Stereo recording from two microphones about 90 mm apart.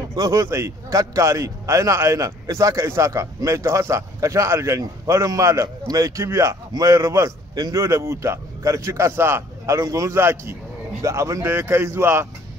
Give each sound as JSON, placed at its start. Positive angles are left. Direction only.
{"t": 0.1, "sound": "speech", "side_deg": -35}